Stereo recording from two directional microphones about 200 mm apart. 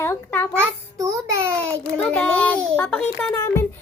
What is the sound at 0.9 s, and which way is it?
Speech, 15° right (ahead or behind).